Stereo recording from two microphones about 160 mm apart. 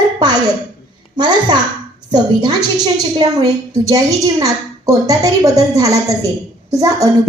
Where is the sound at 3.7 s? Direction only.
20° right (ahead or behind).